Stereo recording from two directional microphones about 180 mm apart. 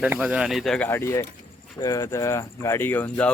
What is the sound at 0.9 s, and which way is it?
Speech, 15° left (ahead or behind).